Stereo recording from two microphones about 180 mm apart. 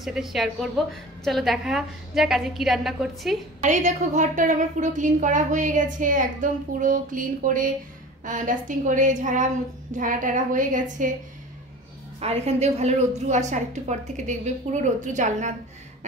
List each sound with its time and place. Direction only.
0.0 s a woman's voice: centre (ahead or behind)
3.6 s a woman's voice: 45° right (ahead or behind)
12.2 s a woman's voice: 35° right (ahead or behind)